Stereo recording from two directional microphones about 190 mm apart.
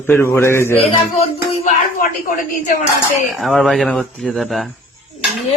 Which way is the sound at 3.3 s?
Centre (ahead or behind).